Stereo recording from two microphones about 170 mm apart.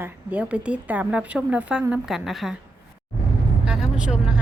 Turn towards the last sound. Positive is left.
turn(degrees=-5)  # may be behind; listen again after turning